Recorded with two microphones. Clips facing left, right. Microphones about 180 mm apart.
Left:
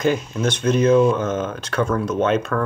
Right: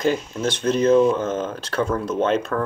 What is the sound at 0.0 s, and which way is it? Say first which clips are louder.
Speech: left 2 dB; 30° right (ahead or behind).